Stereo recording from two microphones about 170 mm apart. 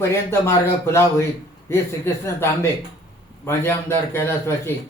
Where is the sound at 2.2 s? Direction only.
15° left (ahead or behind).